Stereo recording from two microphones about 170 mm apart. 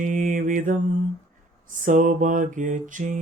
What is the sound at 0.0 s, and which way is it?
Mantra, 50° right (ahead or behind).